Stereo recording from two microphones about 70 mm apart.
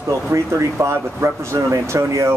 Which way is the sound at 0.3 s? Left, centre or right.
Right.